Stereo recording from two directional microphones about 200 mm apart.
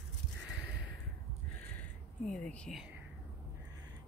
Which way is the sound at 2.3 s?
5° left (ahead or behind).